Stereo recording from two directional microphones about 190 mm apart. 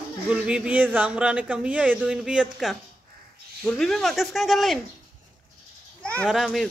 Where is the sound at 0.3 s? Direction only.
5° right (ahead or behind).